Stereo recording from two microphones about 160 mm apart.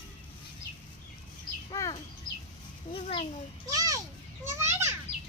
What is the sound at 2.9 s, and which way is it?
Speech, 35° left (ahead or behind).